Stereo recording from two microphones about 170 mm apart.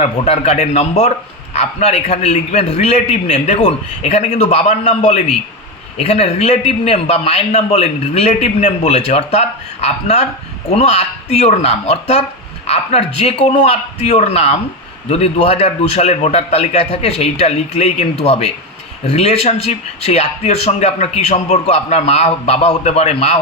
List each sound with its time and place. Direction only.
0.0 s speech: 40° left (ahead or behind)